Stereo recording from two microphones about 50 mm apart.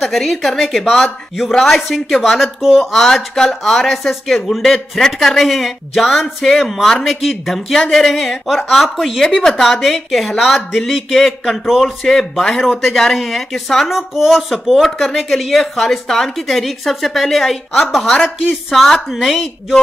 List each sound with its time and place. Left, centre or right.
0.0 s speech: centre
2.9 s speech: centre